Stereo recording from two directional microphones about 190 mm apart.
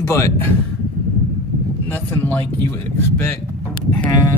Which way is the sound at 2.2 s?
10° left (ahead or behind).